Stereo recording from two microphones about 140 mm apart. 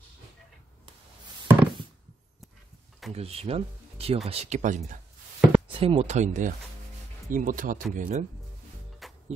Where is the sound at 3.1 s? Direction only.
45° right (ahead or behind); by 5.0 s 60° right (ahead or behind).